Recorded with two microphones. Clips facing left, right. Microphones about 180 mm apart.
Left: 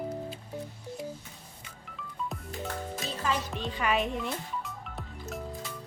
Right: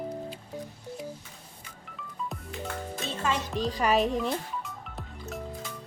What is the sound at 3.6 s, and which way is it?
Speech, 40° right (ahead or behind).